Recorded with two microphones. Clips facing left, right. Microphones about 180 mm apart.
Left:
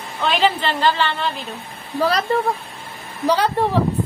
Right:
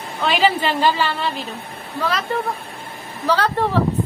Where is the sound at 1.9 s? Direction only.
40° left (ahead or behind).